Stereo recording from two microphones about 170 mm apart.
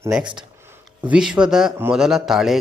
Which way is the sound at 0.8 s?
5° right (ahead or behind).